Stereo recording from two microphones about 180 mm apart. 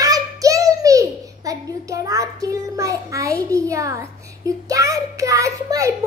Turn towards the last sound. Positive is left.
turn(degrees=-20)  # may be behind; listen again after turning